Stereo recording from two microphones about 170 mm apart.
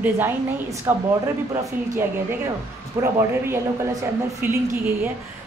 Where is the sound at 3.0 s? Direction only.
15° right (ahead or behind).